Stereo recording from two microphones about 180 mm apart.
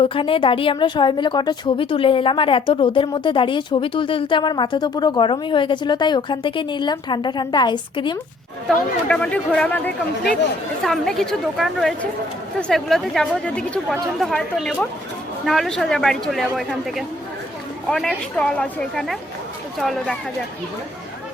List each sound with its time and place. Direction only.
0.1 s a woman's voice: 30° left (ahead or behind)
9.0 s a woman's voice: 5° left (ahead or behind)